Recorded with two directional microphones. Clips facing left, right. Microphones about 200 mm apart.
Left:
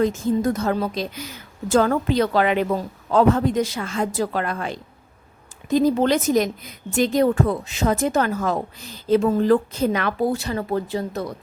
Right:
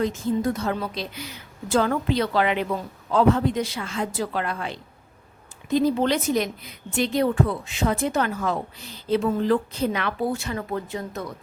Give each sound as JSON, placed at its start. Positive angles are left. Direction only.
{"t": 0.0, "sound": "a woman's voice", "side_deg": 45}